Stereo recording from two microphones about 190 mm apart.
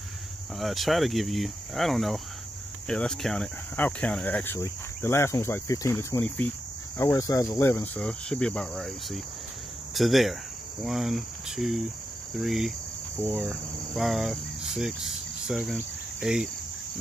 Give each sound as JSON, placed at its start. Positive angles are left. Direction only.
{"t": 0.6, "sound": "speech", "side_deg": 0}
{"t": 13.2, "sound": "cricket", "side_deg": -10}
{"t": 13.5, "sound": "cricket", "side_deg": 0}